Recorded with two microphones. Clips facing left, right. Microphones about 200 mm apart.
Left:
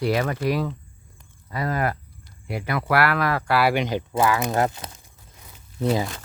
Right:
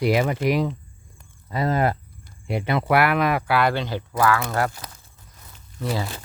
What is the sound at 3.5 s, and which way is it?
Speech, 5° left (ahead or behind).